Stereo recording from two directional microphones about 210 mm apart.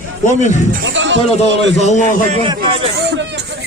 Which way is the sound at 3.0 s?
55° right (ahead or behind).